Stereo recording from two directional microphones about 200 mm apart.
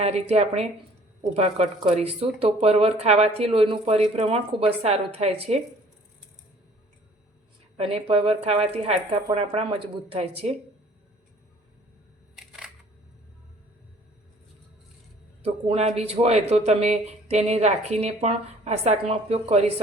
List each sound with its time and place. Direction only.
0.0 s speech: 30° right (ahead or behind)
7.8 s speech: 30° right (ahead or behind)
12.4 s single-lens reflex camera: centre (ahead or behind)
15.4 s speech: 30° right (ahead or behind)